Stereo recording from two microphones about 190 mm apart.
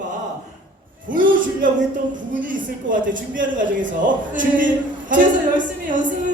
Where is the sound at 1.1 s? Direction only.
45° right (ahead or behind).